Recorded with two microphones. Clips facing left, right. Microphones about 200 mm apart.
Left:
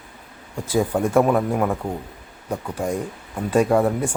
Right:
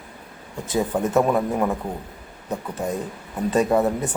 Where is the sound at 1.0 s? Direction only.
10° left (ahead or behind).